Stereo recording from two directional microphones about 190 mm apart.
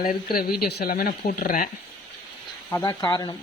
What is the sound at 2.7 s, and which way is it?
Speech, 20° left (ahead or behind).